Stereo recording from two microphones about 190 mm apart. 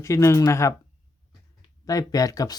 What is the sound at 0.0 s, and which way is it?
Speech, 15° left (ahead or behind).